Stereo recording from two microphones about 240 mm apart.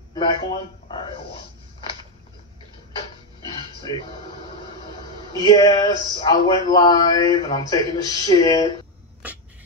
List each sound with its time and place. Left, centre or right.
0.1 s a man's voice: centre
3.4 s speech: centre